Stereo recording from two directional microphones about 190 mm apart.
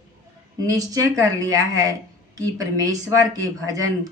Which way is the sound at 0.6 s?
20° right (ahead or behind).